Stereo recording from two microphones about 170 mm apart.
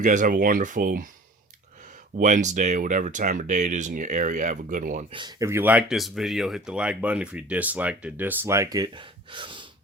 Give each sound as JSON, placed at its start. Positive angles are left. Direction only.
{"t": 0.0, "sound": "speech", "side_deg": -50}
{"t": 2.1, "sound": "speech", "side_deg": -45}
{"t": 5.1, "sound": "speech", "side_deg": -25}
{"t": 5.5, "sound": "speech", "side_deg": -10}